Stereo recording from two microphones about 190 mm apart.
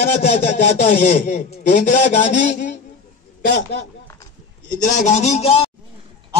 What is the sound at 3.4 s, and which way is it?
Speech, 55° left (ahead or behind).